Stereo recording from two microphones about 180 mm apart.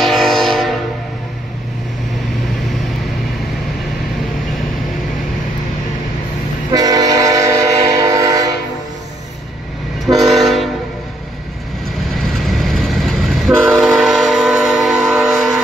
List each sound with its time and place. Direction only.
0.0 s train: centre (ahead or behind)
6.7 s train: 20° right (ahead or behind)
10.0 s train: centre (ahead or behind)
12.2 s train: centre (ahead or behind)